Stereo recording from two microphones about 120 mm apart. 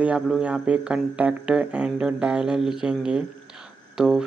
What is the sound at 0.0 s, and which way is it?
Speech, 10° right (ahead or behind).